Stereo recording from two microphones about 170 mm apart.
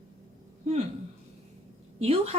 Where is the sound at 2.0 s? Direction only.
35° right (ahead or behind).